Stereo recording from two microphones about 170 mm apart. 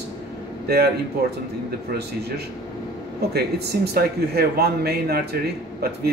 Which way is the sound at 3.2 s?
70° right (ahead or behind).